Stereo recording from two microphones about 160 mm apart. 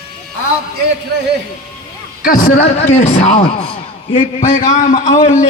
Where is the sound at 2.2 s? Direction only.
60° left (ahead or behind).